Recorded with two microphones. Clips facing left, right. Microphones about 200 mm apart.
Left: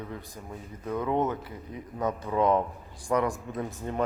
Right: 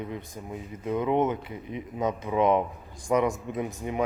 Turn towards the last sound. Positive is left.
turn(degrees=-10)  # may be behind; listen again after turning